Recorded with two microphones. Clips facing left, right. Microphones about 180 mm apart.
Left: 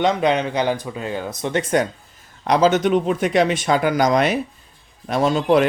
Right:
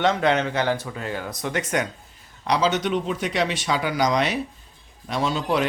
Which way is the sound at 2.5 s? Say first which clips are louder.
Left 6 dB; 50° left (ahead or behind).